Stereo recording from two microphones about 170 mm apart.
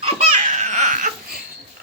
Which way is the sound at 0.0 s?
45° right (ahead or behind).